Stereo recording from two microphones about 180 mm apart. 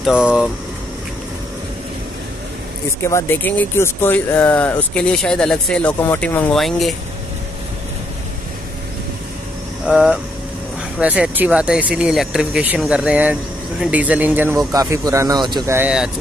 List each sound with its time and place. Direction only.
0.0 s speech: 5° right (ahead or behind)
3.0 s speech: 15° left (ahead or behind)
9.8 s speech: 5° right (ahead or behind)